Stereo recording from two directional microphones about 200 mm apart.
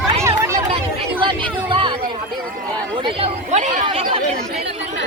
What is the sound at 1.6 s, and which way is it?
Speech, 25° right (ahead or behind).